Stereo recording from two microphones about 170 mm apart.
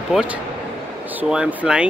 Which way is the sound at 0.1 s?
5° right (ahead or behind).